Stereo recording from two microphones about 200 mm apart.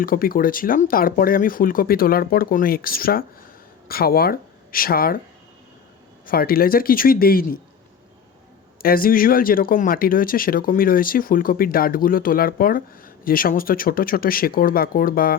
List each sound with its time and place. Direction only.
0.0 s speech: 45° left (ahead or behind)
6.2 s speech: 50° left (ahead or behind)
8.8 s speech: 45° left (ahead or behind)